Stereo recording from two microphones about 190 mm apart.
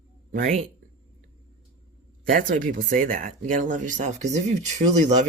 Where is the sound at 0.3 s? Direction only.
45° right (ahead or behind).